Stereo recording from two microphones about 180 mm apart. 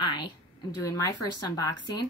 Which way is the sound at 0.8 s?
20° left (ahead or behind).